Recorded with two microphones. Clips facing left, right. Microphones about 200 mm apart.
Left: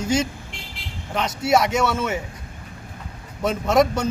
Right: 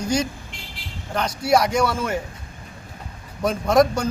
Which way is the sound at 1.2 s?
25° left (ahead or behind).